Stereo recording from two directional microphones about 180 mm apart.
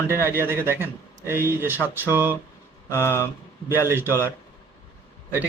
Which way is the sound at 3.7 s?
10° right (ahead or behind).